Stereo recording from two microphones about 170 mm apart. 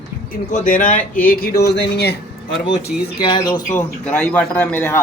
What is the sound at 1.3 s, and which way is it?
Speech, 70° left (ahead or behind).